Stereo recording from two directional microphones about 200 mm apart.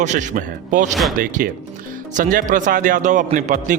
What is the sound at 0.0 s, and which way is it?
A man's voice, 40° right (ahead or behind).